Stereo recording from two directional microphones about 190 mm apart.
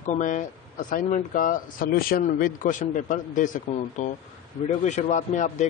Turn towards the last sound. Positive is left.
turn(degrees=40)  # may be behind; listen again after turning